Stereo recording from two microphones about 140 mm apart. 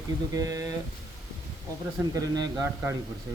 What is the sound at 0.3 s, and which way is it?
Speech, 25° right (ahead or behind).